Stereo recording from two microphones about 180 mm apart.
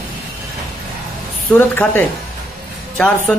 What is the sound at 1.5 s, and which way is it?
Speech, 10° left (ahead or behind).